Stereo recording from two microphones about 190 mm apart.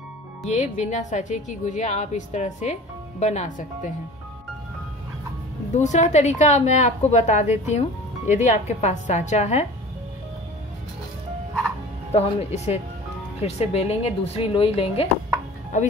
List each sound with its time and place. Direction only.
0.5 s a woman's voice: 40° left (ahead or behind)
5.7 s a woman's voice: 40° left (ahead or behind)
12.1 s a woman's voice: 30° left (ahead or behind)